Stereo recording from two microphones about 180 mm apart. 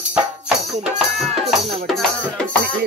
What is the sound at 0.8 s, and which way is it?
Music, centre (ahead or behind).